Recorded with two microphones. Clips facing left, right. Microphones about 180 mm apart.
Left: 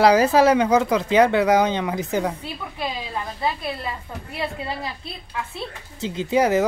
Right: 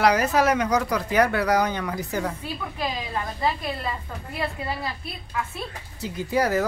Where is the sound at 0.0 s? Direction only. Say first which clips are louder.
Left 5 dB; 30° left (ahead or behind).